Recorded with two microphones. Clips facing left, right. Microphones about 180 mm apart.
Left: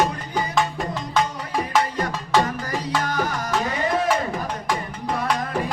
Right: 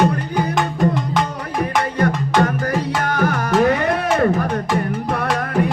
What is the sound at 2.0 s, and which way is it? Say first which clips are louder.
Music: right 5 dB; 60° right (ahead or behind).